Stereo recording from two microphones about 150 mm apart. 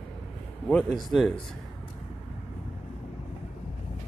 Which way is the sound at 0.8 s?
Centre (ahead or behind).